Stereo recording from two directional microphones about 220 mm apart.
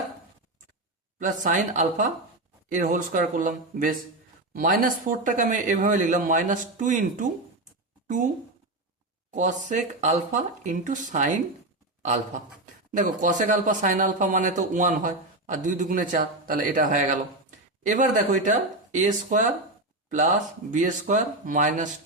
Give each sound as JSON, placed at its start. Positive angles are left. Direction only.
{"t": 1.5, "sound": "a man's voice", "side_deg": -35}
{"t": 9.3, "sound": "a man's voice", "side_deg": -35}
{"t": 12.9, "sound": "a man's voice", "side_deg": -35}